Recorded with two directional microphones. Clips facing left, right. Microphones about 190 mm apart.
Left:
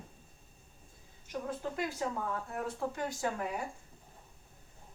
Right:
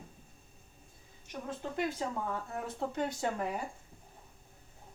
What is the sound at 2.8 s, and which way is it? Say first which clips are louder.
Speech: right 5 dB; 25° right (ahead or behind).